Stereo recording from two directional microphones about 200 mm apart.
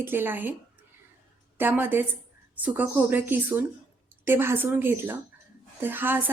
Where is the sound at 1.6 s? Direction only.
10° right (ahead or behind).